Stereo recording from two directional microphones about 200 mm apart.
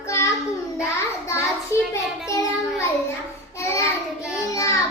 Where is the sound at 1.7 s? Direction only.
15° left (ahead or behind).